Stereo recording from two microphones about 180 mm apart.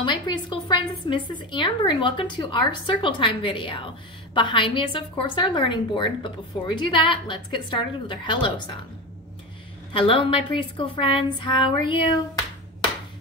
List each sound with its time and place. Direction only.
0.0 s a woman's voice: 25° left (ahead or behind)
9.9 s a woman's voice: 30° left (ahead or behind)